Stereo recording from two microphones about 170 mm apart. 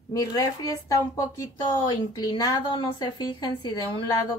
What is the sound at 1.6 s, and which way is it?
A woman's voice, 25° left (ahead or behind).